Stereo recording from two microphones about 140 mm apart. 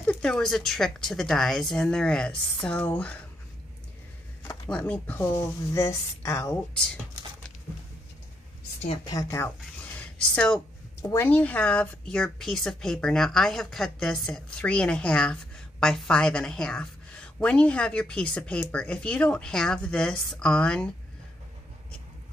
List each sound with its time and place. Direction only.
0.0 s speech: 5° left (ahead or behind)
4.6 s speech: 10° left (ahead or behind)
9.1 s speech: 20° left (ahead or behind)
9.9 s a sound: 10° left (ahead or behind)
11.0 s speech: 15° left (ahead or behind)